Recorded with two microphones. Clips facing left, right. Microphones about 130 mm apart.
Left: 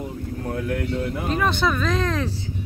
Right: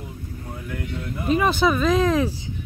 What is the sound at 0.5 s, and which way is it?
Speech, 70° left (ahead or behind).